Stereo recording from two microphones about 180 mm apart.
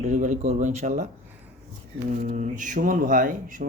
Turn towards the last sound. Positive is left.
turn(degrees=-50)  # may be behind; listen again after turning